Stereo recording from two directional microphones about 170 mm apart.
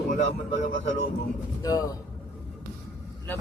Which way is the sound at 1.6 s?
20° left (ahead or behind).